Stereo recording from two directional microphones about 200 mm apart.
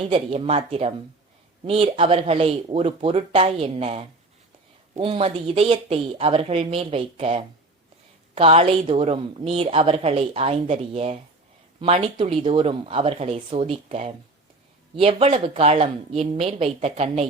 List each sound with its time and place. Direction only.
0.0 s a woman's voice: 30° right (ahead or behind)